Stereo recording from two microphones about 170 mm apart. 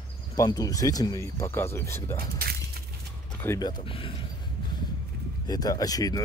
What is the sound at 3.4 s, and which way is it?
Speech, 20° left (ahead or behind).